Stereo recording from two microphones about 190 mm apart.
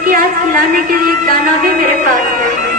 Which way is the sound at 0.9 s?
50° right (ahead or behind).